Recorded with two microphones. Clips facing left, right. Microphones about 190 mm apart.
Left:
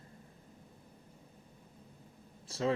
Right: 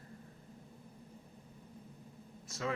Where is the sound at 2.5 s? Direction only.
30° left (ahead or behind).